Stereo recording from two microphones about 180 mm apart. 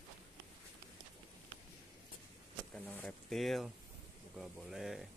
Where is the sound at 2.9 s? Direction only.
5° left (ahead or behind).